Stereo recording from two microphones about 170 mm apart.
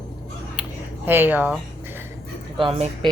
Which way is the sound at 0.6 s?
5° right (ahead or behind).